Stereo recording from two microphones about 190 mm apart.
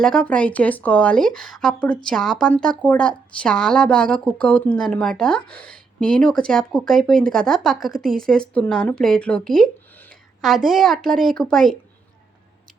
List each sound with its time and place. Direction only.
0.0 s a woman's voice: 5° left (ahead or behind)